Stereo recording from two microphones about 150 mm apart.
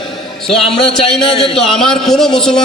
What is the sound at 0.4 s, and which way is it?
A man's voice, 5° left (ahead or behind).